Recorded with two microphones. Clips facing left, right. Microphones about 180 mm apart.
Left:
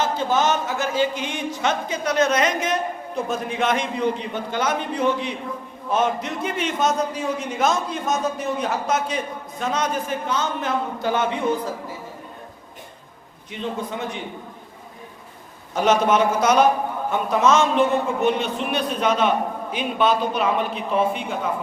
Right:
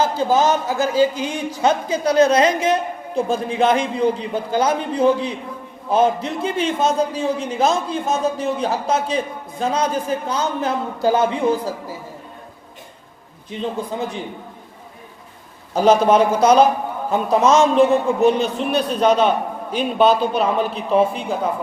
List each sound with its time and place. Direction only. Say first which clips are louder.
0.0 s a man's voice: right 4 dB; 35° right (ahead or behind)
13.5 s a man's voice: right 3 dB; 35° right (ahead or behind)
15.7 s a man's voice: right 5 dB; 35° right (ahead or behind)